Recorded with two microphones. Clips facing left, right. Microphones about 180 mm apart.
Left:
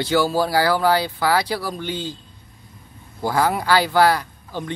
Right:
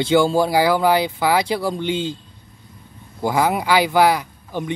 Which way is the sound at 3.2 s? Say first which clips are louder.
Right 1 dB; 15° right (ahead or behind).